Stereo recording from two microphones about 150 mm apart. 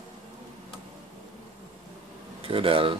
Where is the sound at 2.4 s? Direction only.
35° right (ahead or behind).